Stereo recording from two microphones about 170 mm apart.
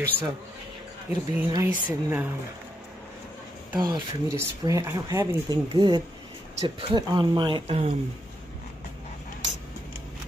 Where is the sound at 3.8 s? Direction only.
25° right (ahead or behind).